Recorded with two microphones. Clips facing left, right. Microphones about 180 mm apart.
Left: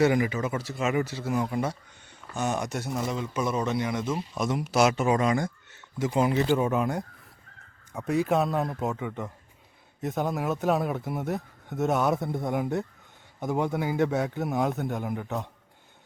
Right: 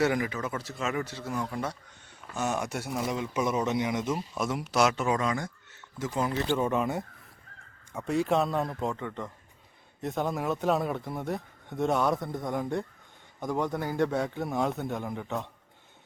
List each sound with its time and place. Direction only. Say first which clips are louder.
0.0 s speech: left 4 dB; centre (ahead or behind)
0.8 s speech: left 5 dB; 15° left (ahead or behind)
1.0 s speech: left 5 dB; 5° left (ahead or behind)
2.3 s speech: left 2 dB; 5° right (ahead or behind)
4.1 s speech: left 2 dB; 5° right (ahead or behind)